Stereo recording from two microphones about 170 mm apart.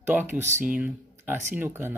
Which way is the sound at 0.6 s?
10° right (ahead or behind).